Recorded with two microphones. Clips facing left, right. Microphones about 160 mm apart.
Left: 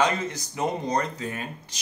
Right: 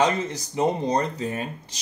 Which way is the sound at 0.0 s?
35° right (ahead or behind).